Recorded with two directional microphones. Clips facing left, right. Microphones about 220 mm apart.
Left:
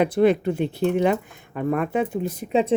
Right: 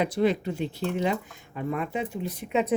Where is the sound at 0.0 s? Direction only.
55° left (ahead or behind).